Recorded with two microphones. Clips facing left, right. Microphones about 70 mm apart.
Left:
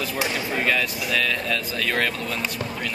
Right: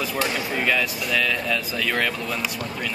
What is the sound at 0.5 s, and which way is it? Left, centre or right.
Speech, centre.